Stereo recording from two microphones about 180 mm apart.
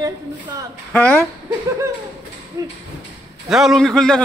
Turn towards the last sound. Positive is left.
turn(degrees=5)  # may be behind; listen again after turning